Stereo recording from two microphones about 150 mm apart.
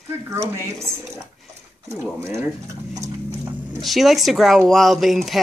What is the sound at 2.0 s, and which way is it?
Speech, 15° right (ahead or behind).